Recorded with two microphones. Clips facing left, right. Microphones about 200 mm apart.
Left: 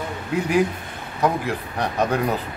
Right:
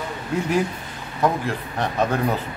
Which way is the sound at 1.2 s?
15° left (ahead or behind).